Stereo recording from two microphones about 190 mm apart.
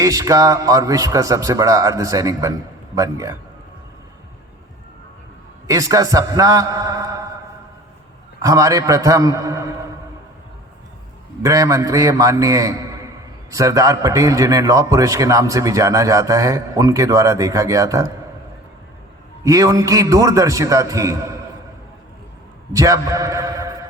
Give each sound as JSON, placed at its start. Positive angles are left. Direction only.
{"t": 0.0, "sound": "a man's voice", "side_deg": -20}
{"t": 5.6, "sound": "a man's voice", "side_deg": -15}
{"t": 8.4, "sound": "a man's voice", "side_deg": -15}
{"t": 11.4, "sound": "a man's voice", "side_deg": -15}
{"t": 19.5, "sound": "a man's voice", "side_deg": -15}
{"t": 22.7, "sound": "a man's voice", "side_deg": -15}